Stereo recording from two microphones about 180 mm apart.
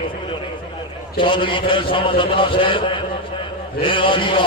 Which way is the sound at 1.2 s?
30° left (ahead or behind).